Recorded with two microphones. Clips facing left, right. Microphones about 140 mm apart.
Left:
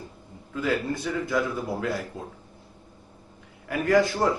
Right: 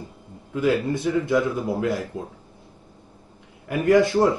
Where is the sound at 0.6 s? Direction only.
20° right (ahead or behind).